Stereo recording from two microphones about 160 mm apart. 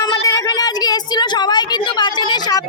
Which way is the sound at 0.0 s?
25° left (ahead or behind).